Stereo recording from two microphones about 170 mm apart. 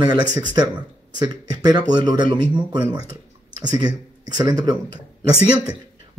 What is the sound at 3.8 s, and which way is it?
Speech, 25° right (ahead or behind).